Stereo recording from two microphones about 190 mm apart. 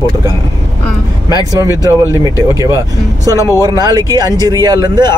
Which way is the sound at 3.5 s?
20° right (ahead or behind).